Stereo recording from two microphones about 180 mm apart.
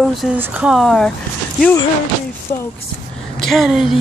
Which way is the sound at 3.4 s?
Centre (ahead or behind).